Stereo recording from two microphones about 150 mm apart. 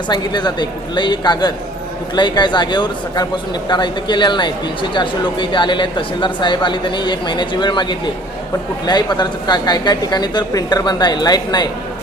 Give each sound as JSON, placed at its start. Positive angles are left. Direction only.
{"t": 0.1, "sound": "a woman's voice", "side_deg": 30}